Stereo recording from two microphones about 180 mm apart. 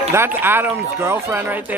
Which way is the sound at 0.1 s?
10° right (ahead or behind).